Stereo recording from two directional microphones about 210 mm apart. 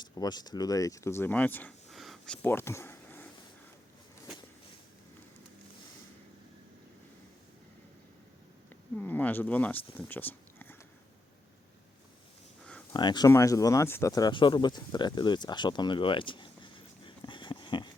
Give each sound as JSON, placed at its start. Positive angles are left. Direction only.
{"t": 0.0, "sound": "speech", "side_deg": 20}
{"t": 9.0, "sound": "speech", "side_deg": 10}
{"t": 12.9, "sound": "speech", "side_deg": 20}